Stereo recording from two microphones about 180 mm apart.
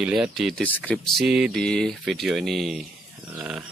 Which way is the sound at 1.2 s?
5° right (ahead or behind).